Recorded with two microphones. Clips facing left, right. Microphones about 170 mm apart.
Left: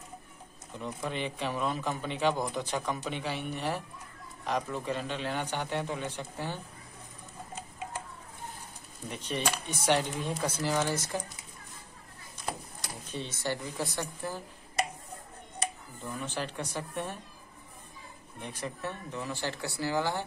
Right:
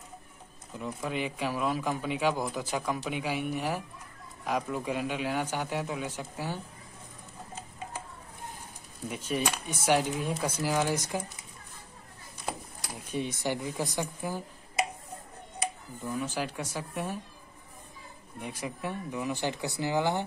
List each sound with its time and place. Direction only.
0.7 s speech: 5° right (ahead or behind)
9.1 s speech: 5° right (ahead or behind)
12.4 s speech: 10° right (ahead or behind)
15.6 s speech: 10° right (ahead or behind)
18.4 s speech: 10° right (ahead or behind)